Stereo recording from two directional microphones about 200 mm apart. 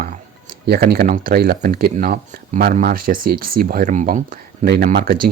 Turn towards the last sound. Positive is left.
turn(degrees=-50)  # may be behind; listen again after turning